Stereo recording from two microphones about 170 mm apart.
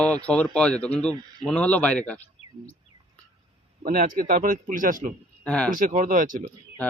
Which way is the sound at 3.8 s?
50° right (ahead or behind).